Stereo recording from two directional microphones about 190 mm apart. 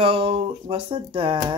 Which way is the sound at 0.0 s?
30° right (ahead or behind).